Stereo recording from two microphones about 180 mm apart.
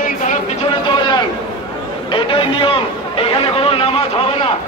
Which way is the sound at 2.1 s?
30° left (ahead or behind).